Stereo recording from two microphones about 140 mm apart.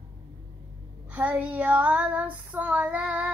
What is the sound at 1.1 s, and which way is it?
Child singing, 10° right (ahead or behind).